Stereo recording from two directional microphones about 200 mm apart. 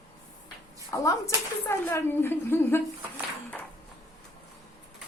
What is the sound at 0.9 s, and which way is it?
A woman's voice, 15° left (ahead or behind).